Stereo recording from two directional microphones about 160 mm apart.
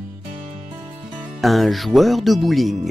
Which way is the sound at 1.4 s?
Centre (ahead or behind).